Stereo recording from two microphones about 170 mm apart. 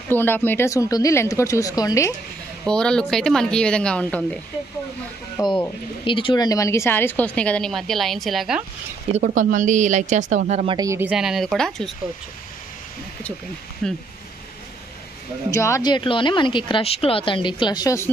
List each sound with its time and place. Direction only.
0.1 s a woman's voice: 10° left (ahead or behind)
2.6 s a woman's voice: 5° left (ahead or behind)
5.4 s a woman's voice: 20° left (ahead or behind); by 8.6 s centre (ahead or behind)
9.2 s speech: 50° right (ahead or behind)
10.8 s speech: 15° right (ahead or behind)
11.1 s a woman's voice: 5° right (ahead or behind)
13.8 s a woman's voice: centre (ahead or behind)
15.5 s speech: 15° left (ahead or behind)